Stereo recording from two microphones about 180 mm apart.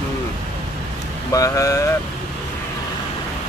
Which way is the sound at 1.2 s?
20° left (ahead or behind).